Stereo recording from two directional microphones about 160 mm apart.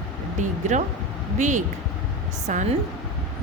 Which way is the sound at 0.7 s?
50° right (ahead or behind).